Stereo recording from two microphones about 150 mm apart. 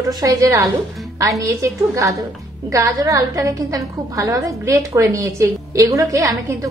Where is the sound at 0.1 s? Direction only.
25° right (ahead or behind).